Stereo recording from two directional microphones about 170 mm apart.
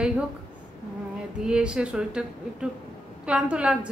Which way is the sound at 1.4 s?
5° right (ahead or behind).